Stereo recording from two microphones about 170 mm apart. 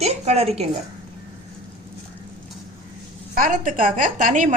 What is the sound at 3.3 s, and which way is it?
A woman's voice, 50° right (ahead or behind).